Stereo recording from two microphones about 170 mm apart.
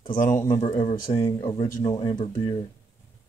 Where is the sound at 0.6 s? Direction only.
30° left (ahead or behind).